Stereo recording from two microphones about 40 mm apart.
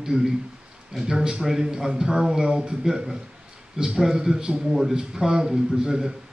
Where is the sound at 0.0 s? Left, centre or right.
Centre.